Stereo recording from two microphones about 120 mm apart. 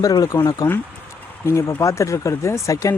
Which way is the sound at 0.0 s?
30° left (ahead or behind).